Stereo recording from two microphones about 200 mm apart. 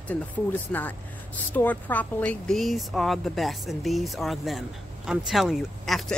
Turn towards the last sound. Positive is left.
turn(degrees=0)  # may be behind; listen again after turning